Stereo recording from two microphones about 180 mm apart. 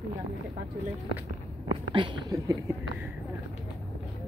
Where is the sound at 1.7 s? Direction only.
25° right (ahead or behind).